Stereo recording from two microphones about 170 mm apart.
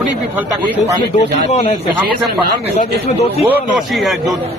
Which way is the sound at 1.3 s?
40° left (ahead or behind).